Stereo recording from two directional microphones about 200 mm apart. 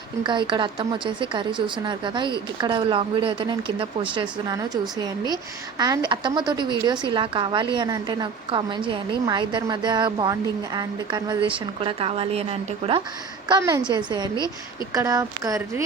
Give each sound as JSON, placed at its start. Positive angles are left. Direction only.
{"t": 0.2, "sound": "a woman's voice", "side_deg": -25}
{"t": 13.5, "sound": "a woman's voice", "side_deg": -15}
{"t": 14.3, "sound": "a woman's voice", "side_deg": 15}
{"t": 14.9, "sound": "speech", "side_deg": -15}